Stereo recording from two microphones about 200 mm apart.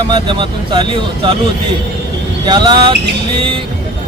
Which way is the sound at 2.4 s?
20° right (ahead or behind).